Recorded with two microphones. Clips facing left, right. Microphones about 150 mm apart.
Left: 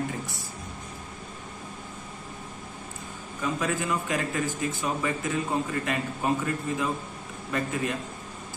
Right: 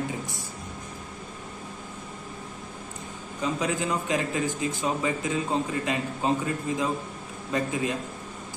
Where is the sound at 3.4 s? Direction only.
20° right (ahead or behind).